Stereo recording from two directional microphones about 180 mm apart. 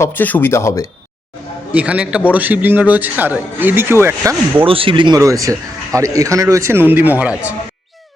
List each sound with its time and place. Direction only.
0.0 s speech: 10° left (ahead or behind)
1.7 s speech: 5° right (ahead or behind)
4.6 s a man's voice: 30° right (ahead or behind); by 7.3 s 10° right (ahead or behind)